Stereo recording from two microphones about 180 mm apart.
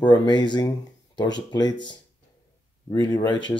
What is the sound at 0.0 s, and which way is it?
Speech, 25° left (ahead or behind).